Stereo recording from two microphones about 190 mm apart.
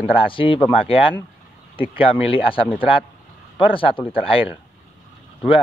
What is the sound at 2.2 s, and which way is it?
Speech, 30° left (ahead or behind).